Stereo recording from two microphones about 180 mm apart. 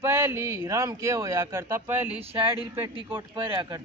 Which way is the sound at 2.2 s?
30° right (ahead or behind).